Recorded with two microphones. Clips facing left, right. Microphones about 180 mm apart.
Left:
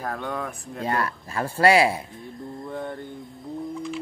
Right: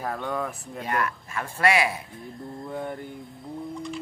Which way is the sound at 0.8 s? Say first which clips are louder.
Left 2 dB; 30° left (ahead or behind).